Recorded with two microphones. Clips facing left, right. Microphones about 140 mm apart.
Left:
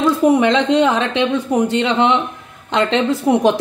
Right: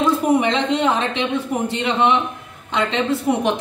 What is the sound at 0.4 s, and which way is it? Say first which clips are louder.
A woman's voice: left 5 dB; 90° left.